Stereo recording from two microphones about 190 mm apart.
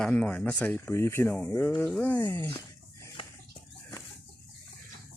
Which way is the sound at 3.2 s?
30° left (ahead or behind).